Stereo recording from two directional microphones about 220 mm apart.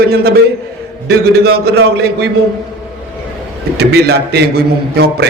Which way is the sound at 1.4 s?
45° right (ahead or behind).